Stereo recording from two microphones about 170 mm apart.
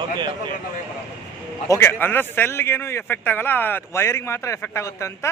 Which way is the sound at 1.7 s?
15° left (ahead or behind).